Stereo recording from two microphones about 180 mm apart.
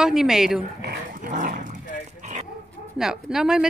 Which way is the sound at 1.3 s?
45° right (ahead or behind).